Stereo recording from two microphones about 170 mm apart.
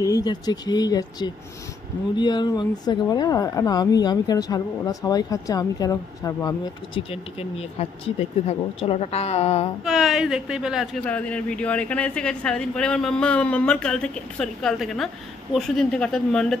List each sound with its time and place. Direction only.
0.0 s speech: 20° left (ahead or behind)
7.0 s speech: 35° left (ahead or behind)
9.8 s a woman's voice: centre (ahead or behind)
11.1 s a woman's voice: 10° left (ahead or behind)